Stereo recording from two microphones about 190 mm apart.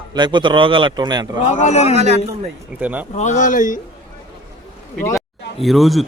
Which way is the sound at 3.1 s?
40° left (ahead or behind).